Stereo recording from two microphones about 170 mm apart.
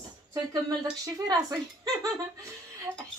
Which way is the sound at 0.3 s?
20° right (ahead or behind).